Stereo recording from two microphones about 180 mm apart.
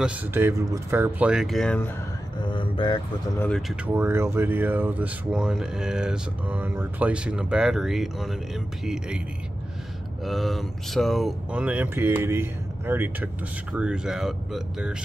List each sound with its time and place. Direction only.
0.0 s speech: 10° right (ahead or behind)
2.4 s vehicle: 25° left (ahead or behind)
3.3 s speech: 5° left (ahead or behind)
3.8 s speech: 10° right (ahead or behind)
10.2 s speech: centre (ahead or behind)